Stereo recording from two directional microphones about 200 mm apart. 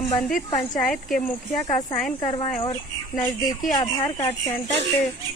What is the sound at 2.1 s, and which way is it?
Speech, 20° left (ahead or behind).